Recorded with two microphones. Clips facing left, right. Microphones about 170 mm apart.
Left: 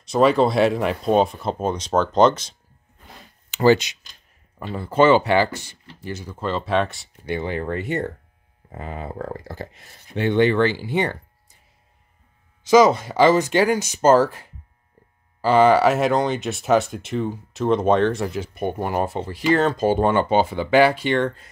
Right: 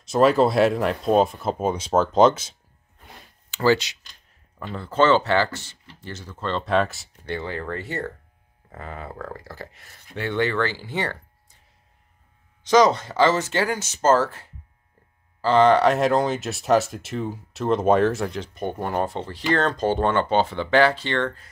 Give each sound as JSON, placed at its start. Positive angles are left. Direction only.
{"t": 0.0, "sound": "speech", "side_deg": 0}
{"t": 3.4, "sound": "speech", "side_deg": 20}
{"t": 7.2, "sound": "speech", "side_deg": 15}
{"t": 12.6, "sound": "speech", "side_deg": 10}